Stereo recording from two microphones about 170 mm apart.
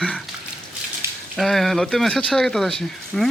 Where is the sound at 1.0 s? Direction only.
15° right (ahead or behind).